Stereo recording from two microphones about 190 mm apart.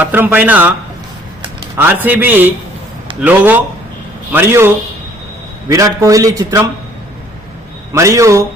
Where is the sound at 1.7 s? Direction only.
10° right (ahead or behind).